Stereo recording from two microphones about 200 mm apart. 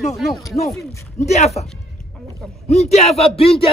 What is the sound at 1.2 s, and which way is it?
Speech, 35° left (ahead or behind).